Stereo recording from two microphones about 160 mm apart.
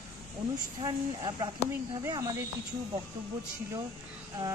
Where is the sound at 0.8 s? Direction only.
25° right (ahead or behind).